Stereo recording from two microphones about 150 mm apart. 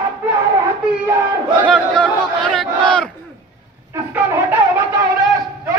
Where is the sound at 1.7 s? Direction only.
5° left (ahead or behind).